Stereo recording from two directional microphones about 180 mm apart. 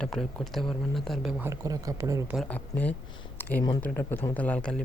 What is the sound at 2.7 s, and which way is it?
Speech, 10° left (ahead or behind).